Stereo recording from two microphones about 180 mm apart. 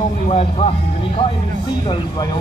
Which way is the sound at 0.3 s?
35° left (ahead or behind).